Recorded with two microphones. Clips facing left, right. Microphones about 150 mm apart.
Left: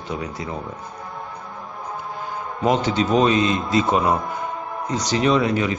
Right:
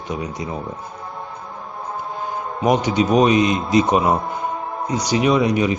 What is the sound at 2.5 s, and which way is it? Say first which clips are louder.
A man's voice: right 2 dB; 15° right (ahead or behind).